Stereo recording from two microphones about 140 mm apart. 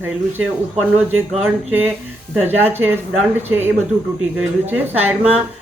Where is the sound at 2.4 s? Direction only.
15° right (ahead or behind).